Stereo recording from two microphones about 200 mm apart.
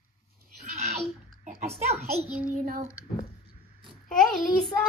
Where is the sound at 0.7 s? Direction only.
35° right (ahead or behind).